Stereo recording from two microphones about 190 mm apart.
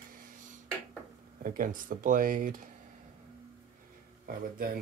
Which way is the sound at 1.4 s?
45° right (ahead or behind).